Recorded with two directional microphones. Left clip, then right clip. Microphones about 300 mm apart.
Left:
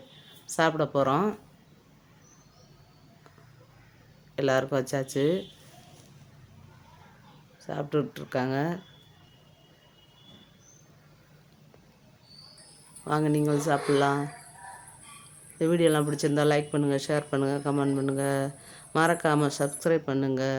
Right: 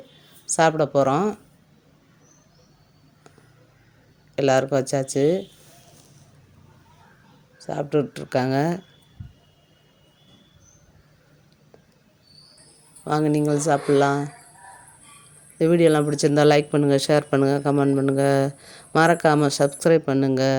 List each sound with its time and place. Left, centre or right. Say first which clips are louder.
0.4 s speech: right 6 dB; centre
4.4 s speech: right 6 dB; centre
7.6 s speech: right 6 dB; centre
13.1 s speech: right 5 dB; centre
13.7 s speech: right 6 dB; centre
14.2 s a sound: right 4 dB; centre
15.5 s speech: right 6 dB; right